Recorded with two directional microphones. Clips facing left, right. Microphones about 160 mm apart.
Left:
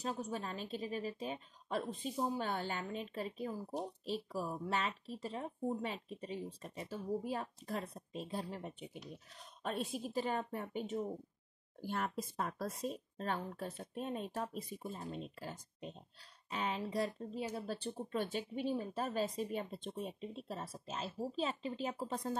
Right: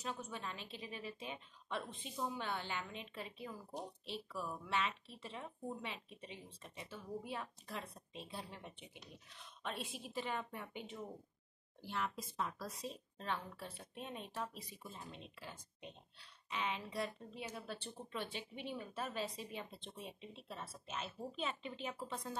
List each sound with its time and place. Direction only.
0.0 s speech: 35° left (ahead or behind)